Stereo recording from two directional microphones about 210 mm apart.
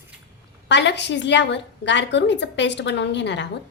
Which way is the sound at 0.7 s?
55° left (ahead or behind).